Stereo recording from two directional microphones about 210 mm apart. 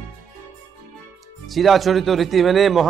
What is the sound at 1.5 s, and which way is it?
Speech, centre (ahead or behind).